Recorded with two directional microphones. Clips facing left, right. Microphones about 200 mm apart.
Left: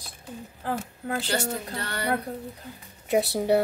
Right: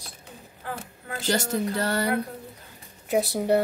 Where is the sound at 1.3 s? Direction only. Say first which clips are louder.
Right 3 dB; 40° right (ahead or behind).